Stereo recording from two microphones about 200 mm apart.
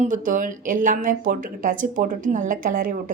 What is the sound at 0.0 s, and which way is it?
Speech, 40° right (ahead or behind).